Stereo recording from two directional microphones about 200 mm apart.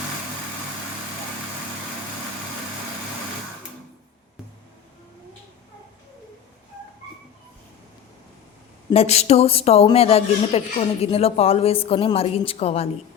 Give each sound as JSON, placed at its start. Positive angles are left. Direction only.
{"t": 8.9, "sound": "a woman's voice", "side_deg": 30}